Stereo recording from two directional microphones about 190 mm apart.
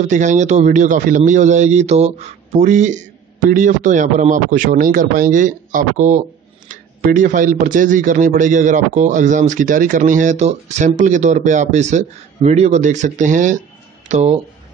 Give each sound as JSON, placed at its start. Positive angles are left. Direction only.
{"t": 0.0, "sound": "speech", "side_deg": -40}